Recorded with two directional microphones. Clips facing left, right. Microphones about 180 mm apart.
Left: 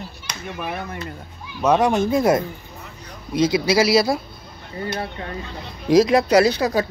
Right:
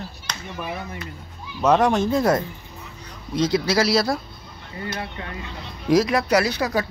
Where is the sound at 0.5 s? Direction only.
65° left (ahead or behind).